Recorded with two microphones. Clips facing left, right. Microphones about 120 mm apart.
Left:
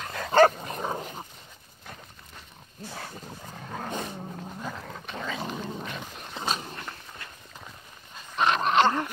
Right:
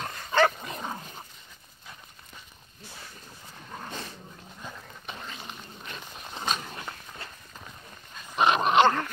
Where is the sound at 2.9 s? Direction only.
75° left (ahead or behind).